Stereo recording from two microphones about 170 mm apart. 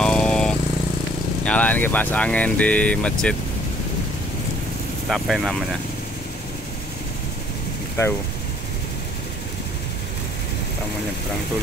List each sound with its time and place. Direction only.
0.0 s vehicle: 5° left (ahead or behind)
1.4 s speech: 5° left (ahead or behind)
5.1 s speech: centre (ahead or behind)
8.0 s speech: 15° left (ahead or behind)